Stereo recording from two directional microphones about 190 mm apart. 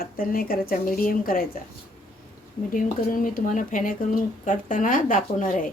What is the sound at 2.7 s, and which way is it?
Speech, 45° left (ahead or behind).